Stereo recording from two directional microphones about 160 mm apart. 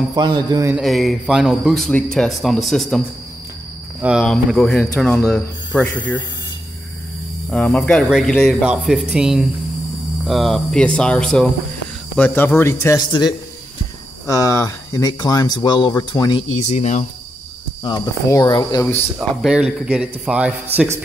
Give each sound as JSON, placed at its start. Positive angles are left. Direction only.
{"t": 0.1, "sound": "a man's voice", "side_deg": -25}
{"t": 0.7, "sound": "a man's voice", "side_deg": 0}
{"t": 4.0, "sound": "a man's voice", "side_deg": 0}
{"t": 7.5, "sound": "a man's voice", "side_deg": 5}
{"t": 14.2, "sound": "speech", "side_deg": 20}
{"t": 16.5, "sound": "speech", "side_deg": 45}
{"t": 17.8, "sound": "speech", "side_deg": 25}
{"t": 19.1, "sound": "a man's voice", "side_deg": -5}